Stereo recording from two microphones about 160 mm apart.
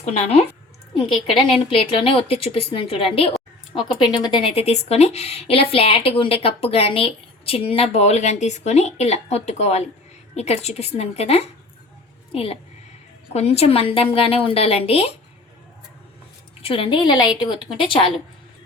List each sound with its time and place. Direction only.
0.0 s a woman's voice: 45° left (ahead or behind)
16.6 s a woman's voice: 35° left (ahead or behind)